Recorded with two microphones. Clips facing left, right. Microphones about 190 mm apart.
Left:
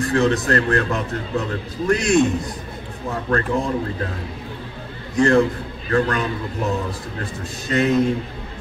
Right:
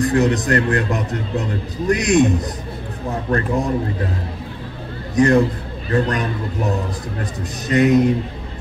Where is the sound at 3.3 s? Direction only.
20° right (ahead or behind).